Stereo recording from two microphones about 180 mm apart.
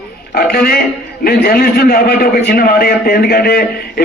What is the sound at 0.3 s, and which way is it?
A man's voice, 60° left (ahead or behind).